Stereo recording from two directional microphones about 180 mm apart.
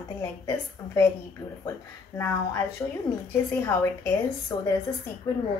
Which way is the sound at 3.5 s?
10° left (ahead or behind).